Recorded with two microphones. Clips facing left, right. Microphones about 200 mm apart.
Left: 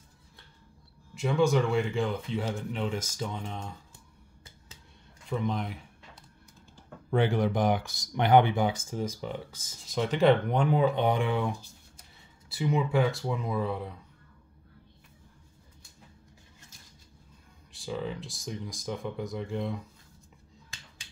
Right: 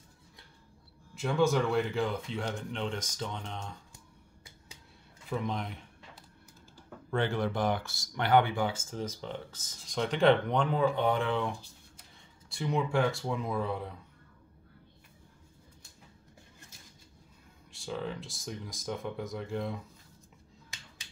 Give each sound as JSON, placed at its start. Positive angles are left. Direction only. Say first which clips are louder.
{"t": 1.1, "sound": "speech", "louder": "left 2 dB", "side_deg": 0}
{"t": 5.3, "sound": "speech", "louder": "left 3 dB", "side_deg": 0}
{"t": 7.1, "sound": "speech", "louder": "left 4 dB", "side_deg": 15}
{"t": 12.4, "sound": "speech", "louder": "left 3 dB", "side_deg": 5}
{"t": 17.7, "sound": "speech", "louder": "left 2 dB", "side_deg": 0}